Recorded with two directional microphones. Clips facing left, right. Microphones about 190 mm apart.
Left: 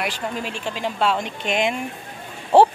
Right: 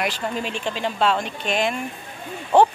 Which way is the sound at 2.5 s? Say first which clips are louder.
Left 2 dB; 30° left (ahead or behind).